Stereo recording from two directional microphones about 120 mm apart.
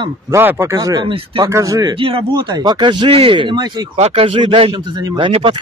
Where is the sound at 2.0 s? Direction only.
50° right (ahead or behind).